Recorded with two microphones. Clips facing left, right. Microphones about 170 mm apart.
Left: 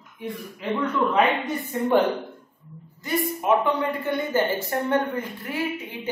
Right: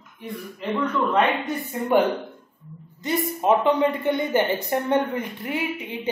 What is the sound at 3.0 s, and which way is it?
A woman's voice, 25° right (ahead or behind).